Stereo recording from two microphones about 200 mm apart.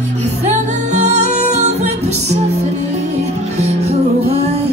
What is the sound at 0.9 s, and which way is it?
Music, 35° right (ahead or behind).